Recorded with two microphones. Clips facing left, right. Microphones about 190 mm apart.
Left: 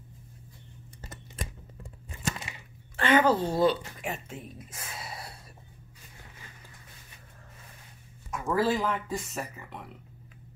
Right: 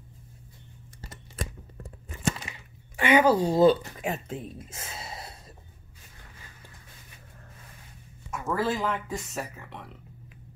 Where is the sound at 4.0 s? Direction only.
35° right (ahead or behind).